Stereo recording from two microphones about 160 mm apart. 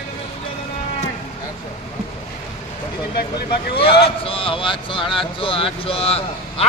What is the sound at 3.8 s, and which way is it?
A man's voice, 35° left (ahead or behind).